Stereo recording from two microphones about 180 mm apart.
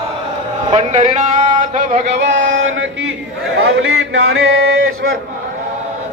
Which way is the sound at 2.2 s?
90° right.